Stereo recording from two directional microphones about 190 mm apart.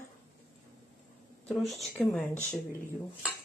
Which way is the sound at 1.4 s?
Centre (ahead or behind).